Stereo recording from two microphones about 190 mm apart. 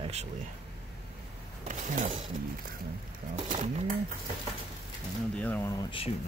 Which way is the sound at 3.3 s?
35° right (ahead or behind).